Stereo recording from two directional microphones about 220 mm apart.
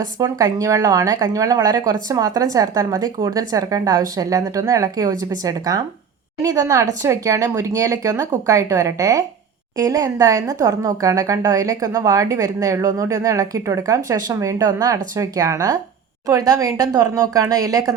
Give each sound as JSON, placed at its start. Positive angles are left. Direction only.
{"t": 0.2, "sound": "a woman's voice", "side_deg": -15}